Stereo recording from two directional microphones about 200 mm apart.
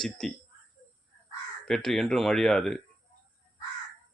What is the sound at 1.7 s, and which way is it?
Speech, centre (ahead or behind).